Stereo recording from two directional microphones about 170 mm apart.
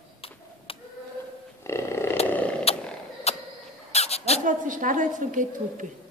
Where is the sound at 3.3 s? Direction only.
40° left (ahead or behind).